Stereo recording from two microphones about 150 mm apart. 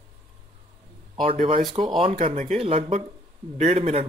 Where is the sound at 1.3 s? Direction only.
40° right (ahead or behind).